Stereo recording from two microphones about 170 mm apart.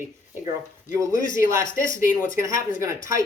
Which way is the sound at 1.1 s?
55° left (ahead or behind).